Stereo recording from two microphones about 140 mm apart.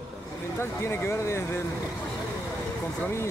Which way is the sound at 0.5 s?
20° left (ahead or behind).